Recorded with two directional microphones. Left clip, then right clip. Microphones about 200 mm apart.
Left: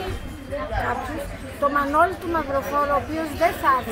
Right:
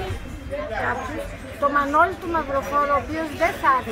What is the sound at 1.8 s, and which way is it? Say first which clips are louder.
Speech: right 1 dB; 5° left (ahead or behind).